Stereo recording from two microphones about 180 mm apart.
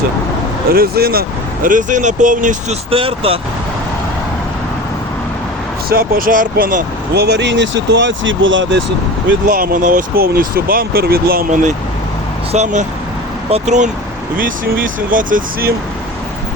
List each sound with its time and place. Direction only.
0.7 s speech: 60° right (ahead or behind)
1.6 s speech: 45° right (ahead or behind)
2.9 s speech: 30° right (ahead or behind)
5.9 s speech: 55° right (ahead or behind); by 8.8 s 90° right
9.5 s speech: 50° right (ahead or behind)
12.5 s speech: 40° right (ahead or behind)